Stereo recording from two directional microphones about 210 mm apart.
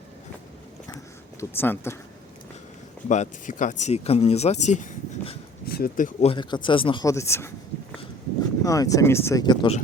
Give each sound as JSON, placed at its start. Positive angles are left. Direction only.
{"t": 1.4, "sound": "speech", "side_deg": 10}
{"t": 3.1, "sound": "speech", "side_deg": 35}
{"t": 5.6, "sound": "speech", "side_deg": 45}
{"t": 6.3, "sound": "speech", "side_deg": 20}
{"t": 8.6, "sound": "speech", "side_deg": 15}